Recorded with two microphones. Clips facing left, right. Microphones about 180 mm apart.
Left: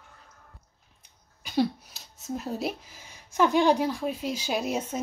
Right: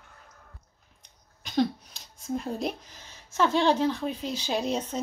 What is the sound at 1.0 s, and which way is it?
A woman's voice, 5° left (ahead or behind).